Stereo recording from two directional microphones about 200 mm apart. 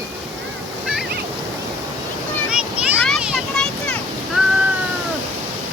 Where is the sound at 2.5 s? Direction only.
5° right (ahead or behind).